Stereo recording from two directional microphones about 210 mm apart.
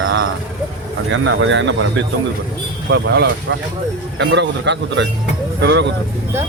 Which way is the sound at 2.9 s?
55° right (ahead or behind).